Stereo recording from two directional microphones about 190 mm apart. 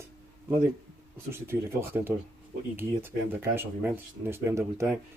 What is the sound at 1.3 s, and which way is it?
Speech, 15° right (ahead or behind).